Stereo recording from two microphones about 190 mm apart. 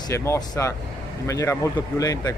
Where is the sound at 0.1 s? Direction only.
15° left (ahead or behind).